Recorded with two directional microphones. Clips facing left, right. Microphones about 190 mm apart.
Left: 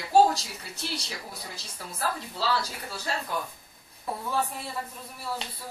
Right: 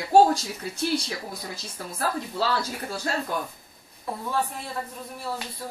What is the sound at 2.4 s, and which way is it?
Speech, 50° right (ahead or behind).